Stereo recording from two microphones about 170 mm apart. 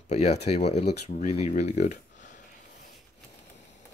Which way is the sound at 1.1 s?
40° left (ahead or behind).